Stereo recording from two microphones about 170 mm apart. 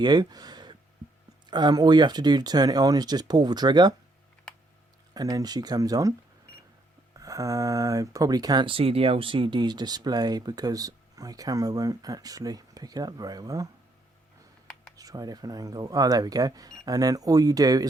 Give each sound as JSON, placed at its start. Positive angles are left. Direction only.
{"t": 0.0, "sound": "a sound", "side_deg": -25}
{"t": 1.5, "sound": "speech", "side_deg": -25}
{"t": 5.1, "sound": "speech", "side_deg": -20}
{"t": 7.2, "sound": "speech", "side_deg": -20}
{"t": 14.9, "sound": "speech", "side_deg": -20}